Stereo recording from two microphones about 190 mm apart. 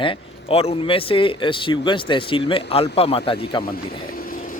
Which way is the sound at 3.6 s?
50° left (ahead or behind).